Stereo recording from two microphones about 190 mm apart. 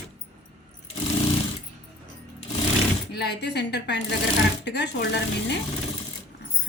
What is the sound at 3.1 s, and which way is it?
Speech, 60° left (ahead or behind).